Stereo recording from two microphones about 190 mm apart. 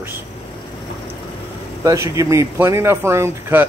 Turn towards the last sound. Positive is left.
turn(degrees=-10)  # may be behind; listen again after turning